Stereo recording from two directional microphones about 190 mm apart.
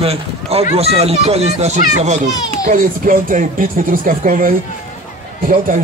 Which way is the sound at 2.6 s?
45° right (ahead or behind).